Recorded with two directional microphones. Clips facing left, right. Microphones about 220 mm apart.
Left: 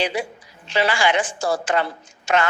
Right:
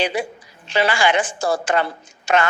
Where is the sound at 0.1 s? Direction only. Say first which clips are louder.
Right 2 dB; 50° right (ahead or behind).